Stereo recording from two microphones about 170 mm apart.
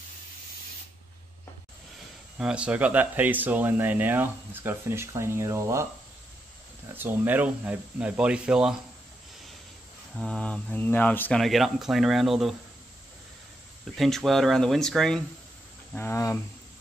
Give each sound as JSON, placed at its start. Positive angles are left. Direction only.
{"t": 2.3, "sound": "speech", "side_deg": -5}
{"t": 7.0, "sound": "speech", "side_deg": -10}
{"t": 10.1, "sound": "speech", "side_deg": 5}
{"t": 13.9, "sound": "speech", "side_deg": 0}
{"t": 15.9, "sound": "speech", "side_deg": 15}